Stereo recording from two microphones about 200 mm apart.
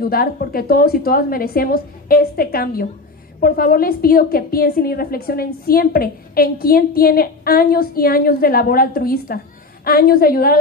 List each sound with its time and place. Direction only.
0.0 s a woman's voice: 50° left (ahead or behind)